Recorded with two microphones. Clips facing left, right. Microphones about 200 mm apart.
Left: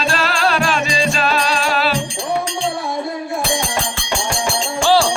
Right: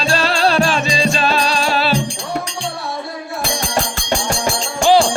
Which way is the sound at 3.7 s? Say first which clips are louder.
Right 3 dB; 40° right (ahead or behind).